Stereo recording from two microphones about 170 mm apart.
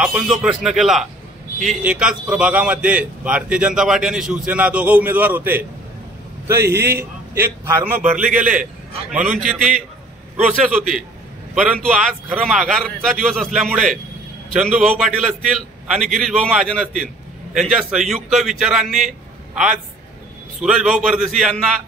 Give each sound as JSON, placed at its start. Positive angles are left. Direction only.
{"t": 0.0, "sound": "a man's voice", "side_deg": -5}
{"t": 9.4, "sound": "a man's voice", "side_deg": 0}